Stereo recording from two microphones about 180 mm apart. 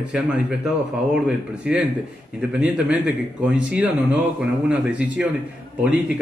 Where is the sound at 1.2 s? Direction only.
5° right (ahead or behind).